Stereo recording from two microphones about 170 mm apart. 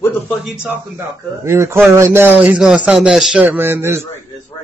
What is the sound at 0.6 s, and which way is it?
A man's voice, 15° right (ahead or behind).